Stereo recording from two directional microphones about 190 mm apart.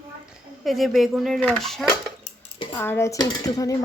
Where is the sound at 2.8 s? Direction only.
15° left (ahead or behind).